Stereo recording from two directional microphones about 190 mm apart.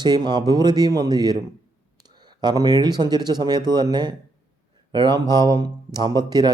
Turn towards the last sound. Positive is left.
turn(degrees=-20)  # may be behind; listen again after turning